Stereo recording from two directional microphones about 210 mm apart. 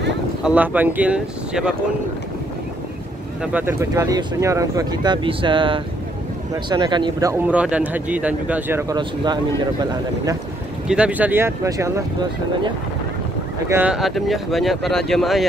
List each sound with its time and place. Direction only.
0.4 s speech: 5° right (ahead or behind)
3.5 s speech: 10° right (ahead or behind)
10.9 s speech: 5° right (ahead or behind)
13.7 s speech: 5° right (ahead or behind)